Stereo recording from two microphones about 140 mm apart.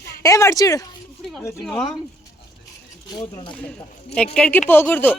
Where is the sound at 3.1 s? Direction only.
30° left (ahead or behind).